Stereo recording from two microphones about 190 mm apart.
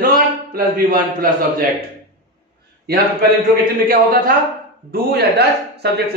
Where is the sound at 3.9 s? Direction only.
50° right (ahead or behind).